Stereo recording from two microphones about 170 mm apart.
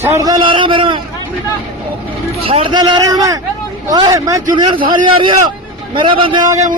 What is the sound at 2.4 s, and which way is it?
A man's voice, 35° right (ahead or behind).